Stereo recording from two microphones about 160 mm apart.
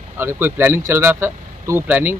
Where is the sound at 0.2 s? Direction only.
15° right (ahead or behind).